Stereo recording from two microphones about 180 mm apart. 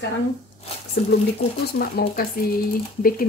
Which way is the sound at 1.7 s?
60° left (ahead or behind).